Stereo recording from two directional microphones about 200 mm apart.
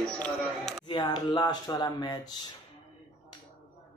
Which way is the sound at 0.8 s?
20° left (ahead or behind).